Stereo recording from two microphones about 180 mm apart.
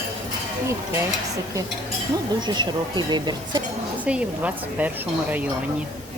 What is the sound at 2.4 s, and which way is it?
Speech, 25° right (ahead or behind).